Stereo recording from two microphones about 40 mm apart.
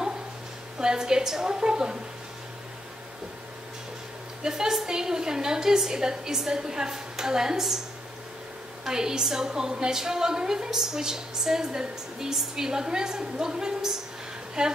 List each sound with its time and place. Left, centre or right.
0.7 s a woman's voice: centre
4.4 s a woman's voice: centre
8.8 s a woman's voice: centre